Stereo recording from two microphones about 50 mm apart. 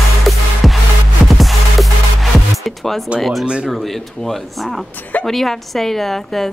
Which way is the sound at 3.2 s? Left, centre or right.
Centre.